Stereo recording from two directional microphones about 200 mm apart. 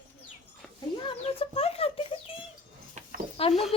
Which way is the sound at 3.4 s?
30° left (ahead or behind).